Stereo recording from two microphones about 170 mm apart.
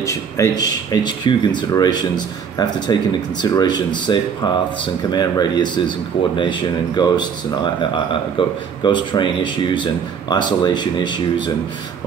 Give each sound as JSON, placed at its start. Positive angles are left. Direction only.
{"t": 0.0, "sound": "speech", "side_deg": 20}